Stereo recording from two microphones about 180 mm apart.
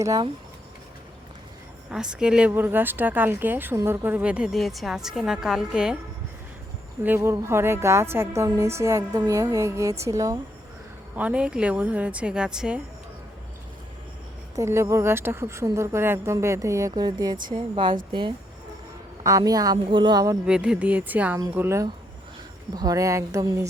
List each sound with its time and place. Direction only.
0.0 s a woman's voice: 20° right (ahead or behind)
1.9 s speech: 5° right (ahead or behind)
7.0 s a woman's voice: 10° right (ahead or behind)
11.2 s a woman's voice: 5° right (ahead or behind)
14.5 s a woman's voice: 15° right (ahead or behind)
20.5 s a woman's voice: 5° right (ahead or behind)